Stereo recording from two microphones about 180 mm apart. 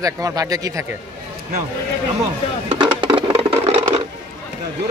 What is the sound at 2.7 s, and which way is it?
Music, 25° right (ahead or behind).